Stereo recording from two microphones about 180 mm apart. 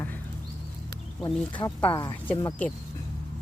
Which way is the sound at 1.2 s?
25° left (ahead or behind).